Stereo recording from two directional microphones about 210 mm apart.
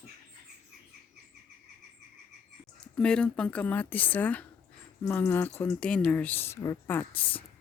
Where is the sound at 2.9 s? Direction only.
5° left (ahead or behind).